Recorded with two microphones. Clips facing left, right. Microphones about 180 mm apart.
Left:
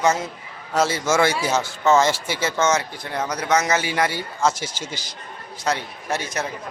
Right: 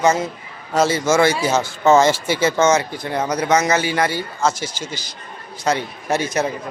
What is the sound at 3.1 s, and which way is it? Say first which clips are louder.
Speech: right 4 dB; 15° right (ahead or behind).